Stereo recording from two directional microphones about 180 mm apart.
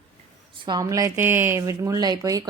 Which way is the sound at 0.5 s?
25° right (ahead or behind).